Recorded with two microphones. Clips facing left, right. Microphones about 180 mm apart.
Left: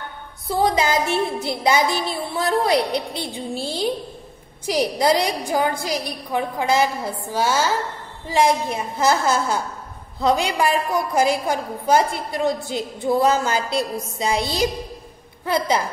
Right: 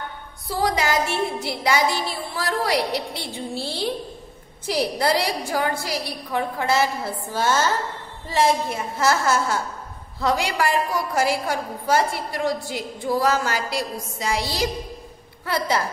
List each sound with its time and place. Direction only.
0.5 s a woman's voice: 25° left (ahead or behind)